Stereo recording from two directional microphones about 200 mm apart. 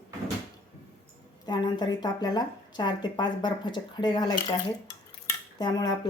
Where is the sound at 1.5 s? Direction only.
20° left (ahead or behind).